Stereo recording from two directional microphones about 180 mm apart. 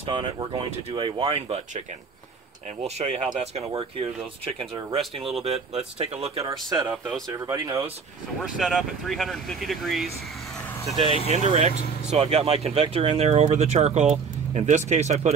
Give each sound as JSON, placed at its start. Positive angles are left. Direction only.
{"t": 0.0, "sound": "speech", "side_deg": -30}
{"t": 3.0, "sound": "speech", "side_deg": -35}
{"t": 6.7, "sound": "speech", "side_deg": -20}
{"t": 8.5, "sound": "speech", "side_deg": 0}
{"t": 11.1, "sound": "speech", "side_deg": 35}
{"t": 12.1, "sound": "speech", "side_deg": -35}